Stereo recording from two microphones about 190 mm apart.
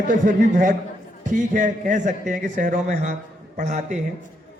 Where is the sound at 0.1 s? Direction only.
45° right (ahead or behind).